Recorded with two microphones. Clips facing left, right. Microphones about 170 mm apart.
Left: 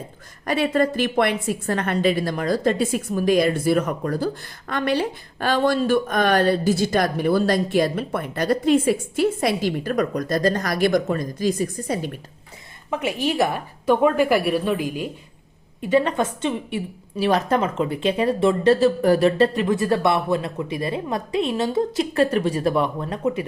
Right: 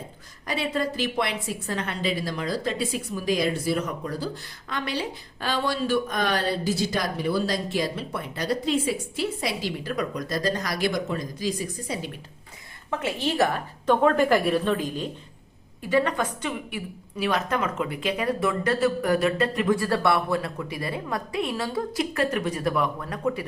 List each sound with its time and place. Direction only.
0.4 s speech: 55° left (ahead or behind)
12.9 s a woman's voice: 15° left (ahead or behind)
15.8 s a woman's voice: 20° left (ahead or behind)